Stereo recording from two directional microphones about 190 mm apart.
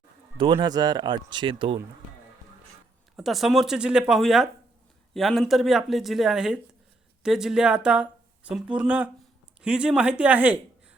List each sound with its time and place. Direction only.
0.3 s speech: 25° right (ahead or behind)
3.2 s speech: centre (ahead or behind)